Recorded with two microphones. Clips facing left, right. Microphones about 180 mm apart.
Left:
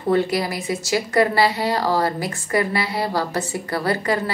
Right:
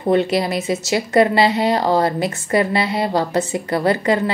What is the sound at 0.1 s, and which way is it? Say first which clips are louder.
Speech: right 3 dB; 20° right (ahead or behind).